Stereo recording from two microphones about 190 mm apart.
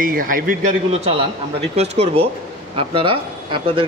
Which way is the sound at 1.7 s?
35° right (ahead or behind).